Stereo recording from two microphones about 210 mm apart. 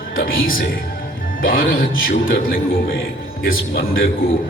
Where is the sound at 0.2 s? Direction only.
45° left (ahead or behind).